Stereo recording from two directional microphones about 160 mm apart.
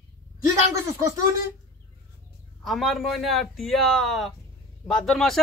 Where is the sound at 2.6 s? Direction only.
Centre (ahead or behind).